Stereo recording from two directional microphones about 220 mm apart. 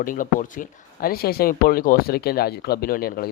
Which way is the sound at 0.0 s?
35° left (ahead or behind).